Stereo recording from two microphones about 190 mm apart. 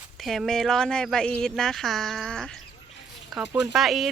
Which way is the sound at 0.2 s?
Centre (ahead or behind).